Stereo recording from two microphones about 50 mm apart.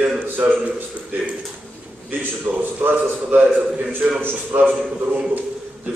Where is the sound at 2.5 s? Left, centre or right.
Right.